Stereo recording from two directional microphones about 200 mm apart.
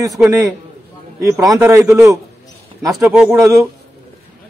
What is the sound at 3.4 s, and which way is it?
Speech, 15° right (ahead or behind).